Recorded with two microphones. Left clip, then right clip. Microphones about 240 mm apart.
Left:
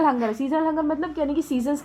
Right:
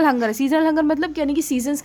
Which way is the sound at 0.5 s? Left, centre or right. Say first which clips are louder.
Right 5 dB; right.